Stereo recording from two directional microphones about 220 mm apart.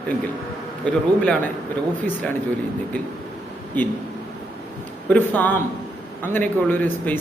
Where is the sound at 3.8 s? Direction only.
10° left (ahead or behind).